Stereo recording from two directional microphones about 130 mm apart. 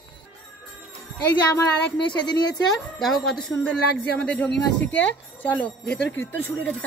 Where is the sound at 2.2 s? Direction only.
35° left (ahead or behind).